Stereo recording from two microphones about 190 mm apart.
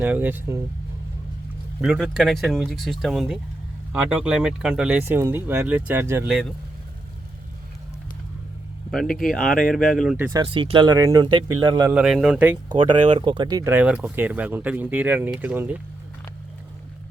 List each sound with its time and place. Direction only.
0.0 s speech: 10° right (ahead or behind)
1.8 s speech: centre (ahead or behind)
9.1 s speech: centre (ahead or behind)
10.2 s speech: 15° right (ahead or behind)
10.4 s speech: 25° right (ahead or behind)
11.9 s speech: 5° right (ahead or behind)
12.6 s speech: 25° right (ahead or behind); by 15.8 s 10° right (ahead or behind)